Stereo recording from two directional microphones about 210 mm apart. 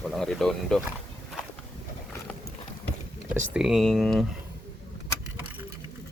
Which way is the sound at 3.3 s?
5° right (ahead or behind).